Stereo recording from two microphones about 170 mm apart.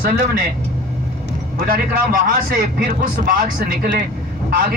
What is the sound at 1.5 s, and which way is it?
Speech, 60° right (ahead or behind).